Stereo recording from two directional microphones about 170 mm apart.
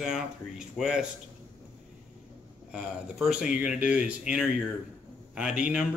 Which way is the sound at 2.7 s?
5° right (ahead or behind).